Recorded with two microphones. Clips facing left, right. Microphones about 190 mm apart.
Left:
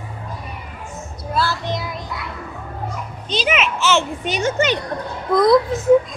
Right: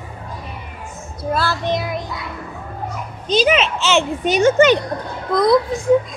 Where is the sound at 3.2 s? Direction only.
40° right (ahead or behind).